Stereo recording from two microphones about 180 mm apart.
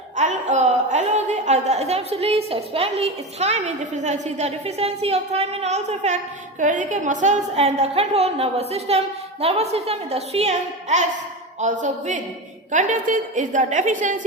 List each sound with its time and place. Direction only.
0.2 s a woman's voice: 40° right (ahead or behind)